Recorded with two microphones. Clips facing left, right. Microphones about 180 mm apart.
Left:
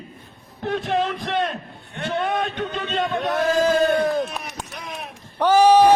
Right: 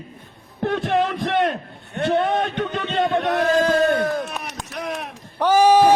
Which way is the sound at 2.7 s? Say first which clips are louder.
Right 3 dB; 60° right (ahead or behind).